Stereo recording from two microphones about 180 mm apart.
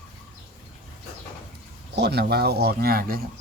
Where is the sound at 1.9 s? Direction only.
65° right (ahead or behind).